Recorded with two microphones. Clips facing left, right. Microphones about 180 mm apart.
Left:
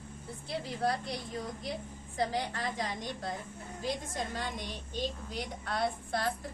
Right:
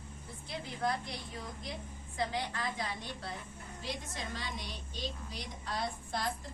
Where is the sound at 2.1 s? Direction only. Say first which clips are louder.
Left 3 dB; 35° left (ahead or behind).